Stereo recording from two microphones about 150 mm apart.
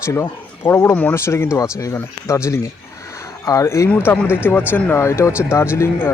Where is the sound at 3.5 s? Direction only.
20° left (ahead or behind).